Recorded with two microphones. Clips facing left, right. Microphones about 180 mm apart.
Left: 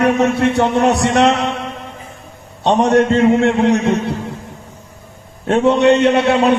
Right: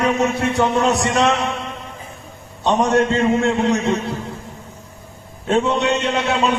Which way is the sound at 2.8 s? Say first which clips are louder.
Left 5 dB; 60° left (ahead or behind).